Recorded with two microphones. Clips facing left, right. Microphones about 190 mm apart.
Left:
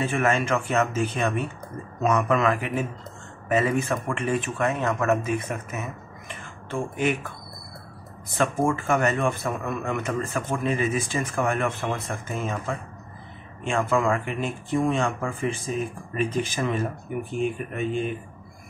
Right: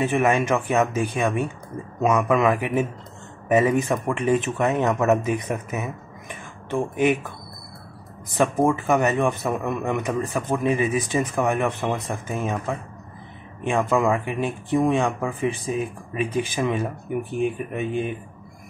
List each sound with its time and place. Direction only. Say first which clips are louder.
0.0 s a man's voice: right 3 dB; 15° right (ahead or behind)
8.3 s a man's voice: right 3 dB; 15° right (ahead or behind)